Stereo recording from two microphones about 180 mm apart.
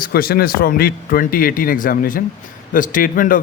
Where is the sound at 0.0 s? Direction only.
55° left (ahead or behind).